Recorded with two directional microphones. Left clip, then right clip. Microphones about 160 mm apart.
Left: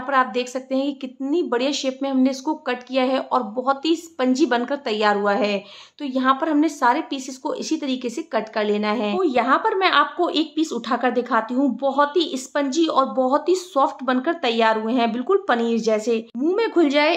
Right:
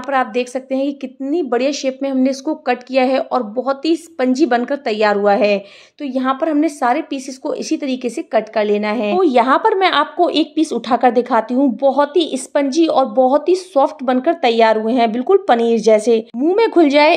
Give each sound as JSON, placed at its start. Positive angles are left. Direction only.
{"t": 0.1, "sound": "a woman's voice", "side_deg": -15}
{"t": 9.2, "sound": "a woman's voice", "side_deg": -35}